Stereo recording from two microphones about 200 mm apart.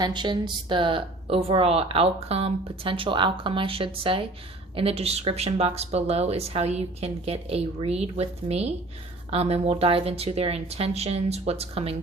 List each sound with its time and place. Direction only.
0.0 s a woman's voice: 20° right (ahead or behind)